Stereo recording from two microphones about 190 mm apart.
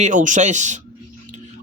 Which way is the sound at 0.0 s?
40° right (ahead or behind).